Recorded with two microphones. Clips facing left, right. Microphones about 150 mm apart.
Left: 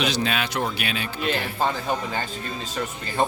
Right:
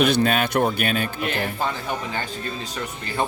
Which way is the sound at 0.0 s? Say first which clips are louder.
Right 6 dB; 55° right (ahead or behind).